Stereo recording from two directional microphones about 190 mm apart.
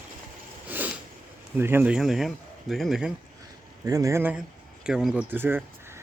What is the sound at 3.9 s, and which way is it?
Speech, 15° right (ahead or behind).